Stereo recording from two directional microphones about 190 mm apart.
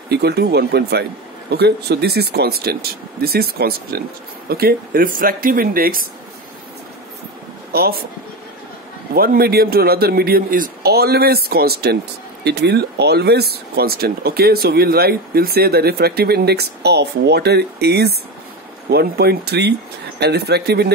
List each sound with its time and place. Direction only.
0.1 s a man's voice: 60° right (ahead or behind)
7.7 s speech: 55° right (ahead or behind)
9.1 s a man's voice: 50° right (ahead or behind)